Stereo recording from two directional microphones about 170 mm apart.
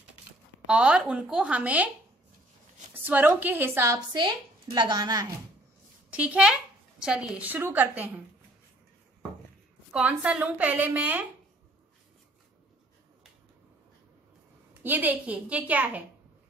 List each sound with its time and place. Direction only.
0.7 s speech: 5° right (ahead or behind)
2.9 s speech: 10° right (ahead or behind)
6.0 s a woman's voice: 10° right (ahead or behind)
9.9 s speech: 5° right (ahead or behind)
14.7 s speech: 10° right (ahead or behind)